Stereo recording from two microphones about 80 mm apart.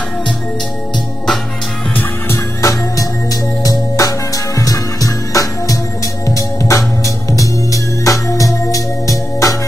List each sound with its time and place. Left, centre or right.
2.0 s music: left
2.6 s music: left